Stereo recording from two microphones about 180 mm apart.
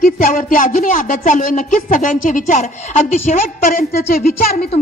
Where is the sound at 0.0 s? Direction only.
50° left (ahead or behind).